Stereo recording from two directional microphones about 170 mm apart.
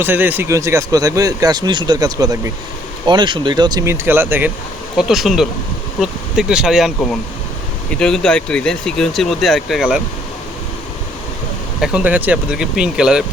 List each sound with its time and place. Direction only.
0.0 s speech: 10° right (ahead or behind)
11.8 s speech: 10° right (ahead or behind)